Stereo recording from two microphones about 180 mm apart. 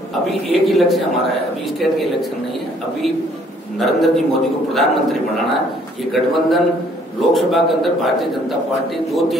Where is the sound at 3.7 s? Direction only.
Centre (ahead or behind).